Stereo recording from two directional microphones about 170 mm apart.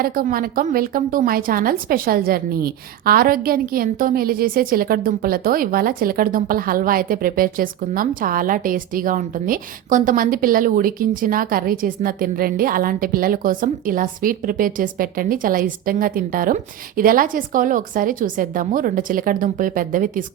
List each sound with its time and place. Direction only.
0.0 s a woman's voice: 55° right (ahead or behind)